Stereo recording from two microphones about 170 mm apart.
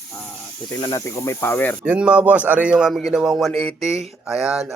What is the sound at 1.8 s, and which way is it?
A man's voice, 5° right (ahead or behind).